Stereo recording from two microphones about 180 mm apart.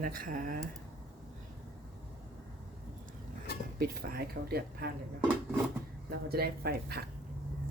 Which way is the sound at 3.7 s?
55° right (ahead or behind).